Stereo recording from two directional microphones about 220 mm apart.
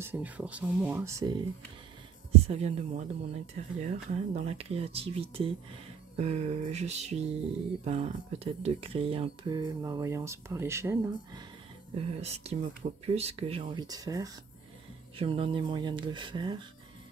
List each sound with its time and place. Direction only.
0.0 s speech: 5° right (ahead or behind)
2.4 s speech: 30° right (ahead or behind)
6.1 s music: 30° right (ahead or behind)
7.8 s speech: 30° right (ahead or behind); by 11.4 s 10° right (ahead or behind)
11.9 s speech: 30° right (ahead or behind)